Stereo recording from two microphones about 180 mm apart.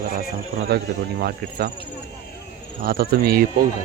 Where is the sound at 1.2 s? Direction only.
65° right (ahead or behind).